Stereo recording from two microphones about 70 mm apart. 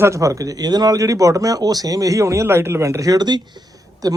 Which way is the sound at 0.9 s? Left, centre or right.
Right.